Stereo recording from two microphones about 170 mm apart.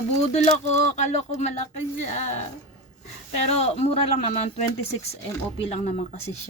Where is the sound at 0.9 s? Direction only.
45° left (ahead or behind).